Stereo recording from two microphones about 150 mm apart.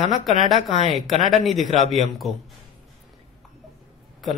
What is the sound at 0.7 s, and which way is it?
Speech, 45° right (ahead or behind).